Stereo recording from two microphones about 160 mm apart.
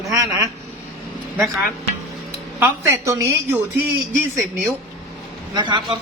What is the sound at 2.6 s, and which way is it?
A woman's voice, 10° right (ahead or behind).